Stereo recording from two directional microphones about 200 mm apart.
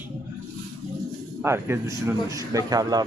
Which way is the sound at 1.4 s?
10° right (ahead or behind).